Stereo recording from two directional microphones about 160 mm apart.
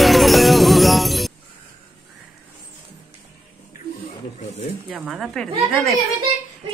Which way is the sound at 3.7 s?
60° left (ahead or behind).